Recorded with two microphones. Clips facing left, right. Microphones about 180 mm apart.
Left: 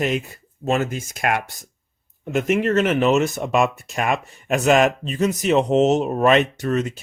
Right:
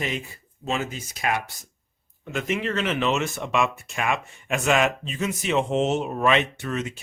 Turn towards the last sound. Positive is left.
turn(degrees=40)  # may be behind; listen again after turning